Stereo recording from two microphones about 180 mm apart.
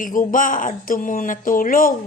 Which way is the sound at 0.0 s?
50° left (ahead or behind).